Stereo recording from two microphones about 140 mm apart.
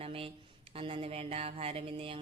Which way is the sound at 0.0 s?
40° right (ahead or behind).